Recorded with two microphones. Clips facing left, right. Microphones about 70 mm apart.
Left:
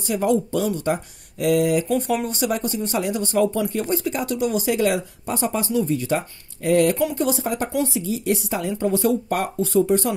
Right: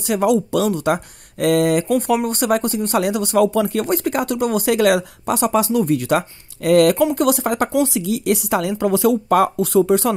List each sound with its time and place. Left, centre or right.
0.0 s speech: right
7.2 s speech: right